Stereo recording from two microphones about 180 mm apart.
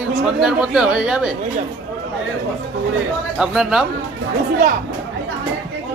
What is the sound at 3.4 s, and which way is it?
Speech, 5° right (ahead or behind).